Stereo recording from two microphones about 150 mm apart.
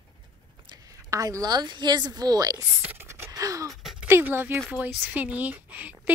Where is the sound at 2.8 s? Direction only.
15° right (ahead or behind).